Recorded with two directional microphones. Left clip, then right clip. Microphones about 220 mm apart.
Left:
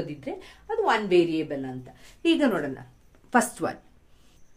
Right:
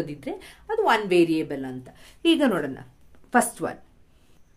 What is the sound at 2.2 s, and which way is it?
Speech, 30° right (ahead or behind).